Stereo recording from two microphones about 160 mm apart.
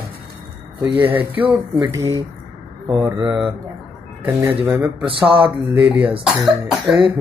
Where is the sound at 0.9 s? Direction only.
10° right (ahead or behind).